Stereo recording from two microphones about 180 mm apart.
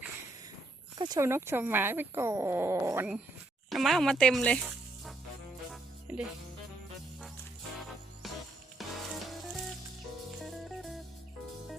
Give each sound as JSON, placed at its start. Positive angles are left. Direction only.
{"t": 0.9, "sound": "speech", "side_deg": -25}
{"t": 3.7, "sound": "speech", "side_deg": 0}
{"t": 5.7, "sound": "music", "side_deg": -5}
{"t": 8.2, "sound": "music", "side_deg": 0}
{"t": 8.8, "sound": "sizzle", "side_deg": 0}
{"t": 10.3, "sound": "music", "side_deg": 0}